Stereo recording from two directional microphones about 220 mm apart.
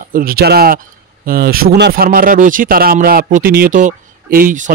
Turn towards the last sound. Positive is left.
turn(degrees=-35)  # may be behind; listen again after turning